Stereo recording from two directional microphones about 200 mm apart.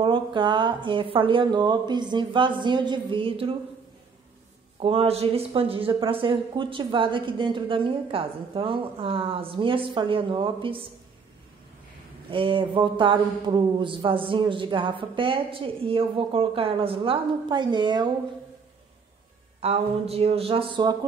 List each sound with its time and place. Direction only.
0.0 s speech: 25° right (ahead or behind)
4.7 s speech: 30° right (ahead or behind)
12.3 s speech: 25° right (ahead or behind)
19.6 s speech: 30° right (ahead or behind)